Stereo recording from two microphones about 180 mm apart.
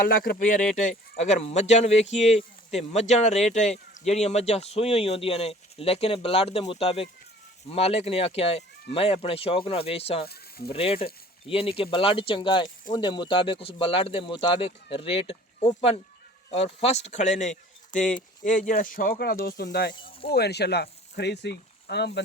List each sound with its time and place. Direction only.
0.1 s speech: 55° left (ahead or behind)